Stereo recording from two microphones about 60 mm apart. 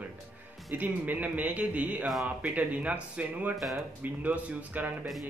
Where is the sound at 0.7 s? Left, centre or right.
Right.